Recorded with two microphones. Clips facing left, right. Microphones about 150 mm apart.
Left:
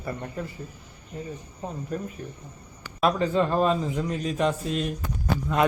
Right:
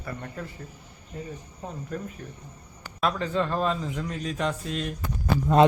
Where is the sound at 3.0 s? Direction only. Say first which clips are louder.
Left 4 dB; 10° left (ahead or behind).